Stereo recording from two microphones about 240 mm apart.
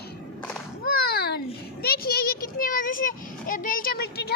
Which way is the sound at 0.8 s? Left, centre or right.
Left.